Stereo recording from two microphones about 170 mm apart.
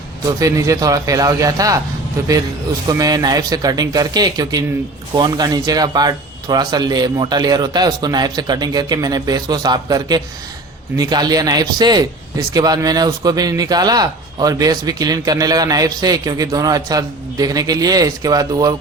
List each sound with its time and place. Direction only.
0.3 s speech: 20° right (ahead or behind)
2.8 s speech: 20° right (ahead or behind)